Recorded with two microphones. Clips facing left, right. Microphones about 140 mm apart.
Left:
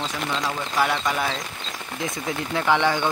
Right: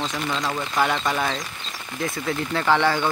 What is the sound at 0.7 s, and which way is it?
Speech, 5° left (ahead or behind).